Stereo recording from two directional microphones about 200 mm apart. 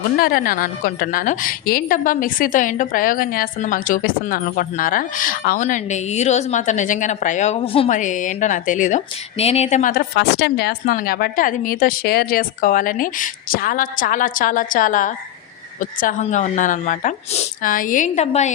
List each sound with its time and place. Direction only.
0.2 s a woman's voice: 45° left (ahead or behind)
10.2 s a woman's voice: 55° left (ahead or behind); by 18.5 s 35° left (ahead or behind)